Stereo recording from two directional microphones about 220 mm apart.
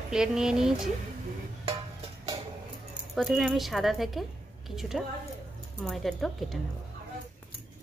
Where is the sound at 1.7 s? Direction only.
25° right (ahead or behind).